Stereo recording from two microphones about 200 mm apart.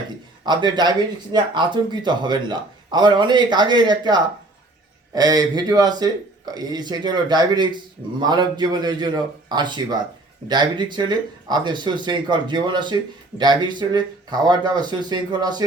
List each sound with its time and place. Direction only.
0.4 s speech: 20° right (ahead or behind)